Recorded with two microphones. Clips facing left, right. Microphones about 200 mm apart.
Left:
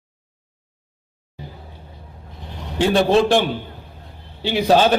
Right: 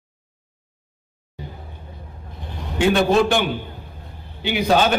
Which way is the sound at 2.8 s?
30° left (ahead or behind).